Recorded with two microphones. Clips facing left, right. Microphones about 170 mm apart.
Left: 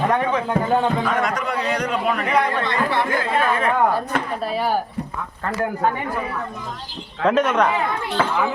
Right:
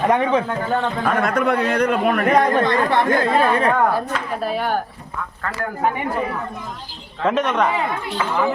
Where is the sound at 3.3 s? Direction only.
35° right (ahead or behind).